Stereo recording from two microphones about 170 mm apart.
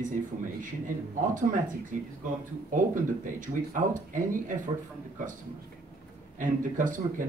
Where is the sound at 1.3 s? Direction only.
50° right (ahead or behind).